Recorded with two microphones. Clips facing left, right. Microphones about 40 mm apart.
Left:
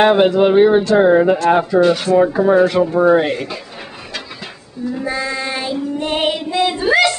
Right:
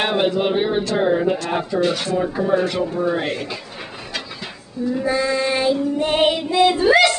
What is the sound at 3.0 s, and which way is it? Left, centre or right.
Speech, left.